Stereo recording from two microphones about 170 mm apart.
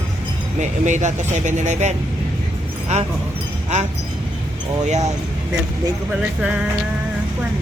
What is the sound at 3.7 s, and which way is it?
Speech, 40° right (ahead or behind).